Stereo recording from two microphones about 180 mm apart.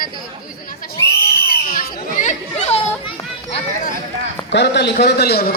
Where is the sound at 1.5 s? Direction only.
50° left (ahead or behind).